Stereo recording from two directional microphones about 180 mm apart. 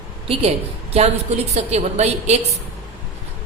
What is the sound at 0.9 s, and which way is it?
Speech, 35° right (ahead or behind).